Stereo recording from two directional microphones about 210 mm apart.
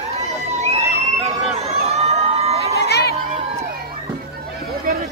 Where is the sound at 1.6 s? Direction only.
30° right (ahead or behind).